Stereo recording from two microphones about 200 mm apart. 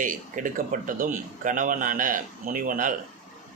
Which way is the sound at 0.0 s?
40° right (ahead or behind).